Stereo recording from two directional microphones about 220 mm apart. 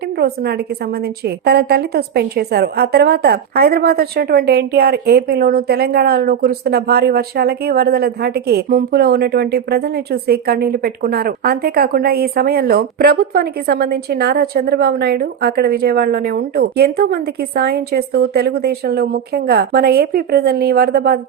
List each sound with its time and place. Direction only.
0.2 s a woman's voice: 45° right (ahead or behind)